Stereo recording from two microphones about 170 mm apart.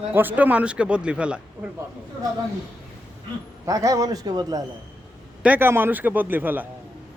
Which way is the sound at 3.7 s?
20° right (ahead or behind).